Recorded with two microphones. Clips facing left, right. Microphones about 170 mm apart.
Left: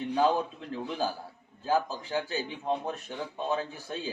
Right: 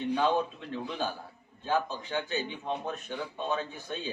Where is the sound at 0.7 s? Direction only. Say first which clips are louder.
Left 2 dB; 35° left (ahead or behind).